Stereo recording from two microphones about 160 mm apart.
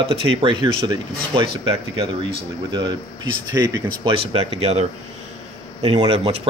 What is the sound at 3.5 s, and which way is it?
Speech, 20° right (ahead or behind).